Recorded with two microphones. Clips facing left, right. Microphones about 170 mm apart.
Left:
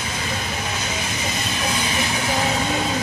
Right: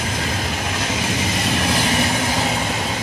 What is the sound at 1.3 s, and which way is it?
Vehicle, 90° right.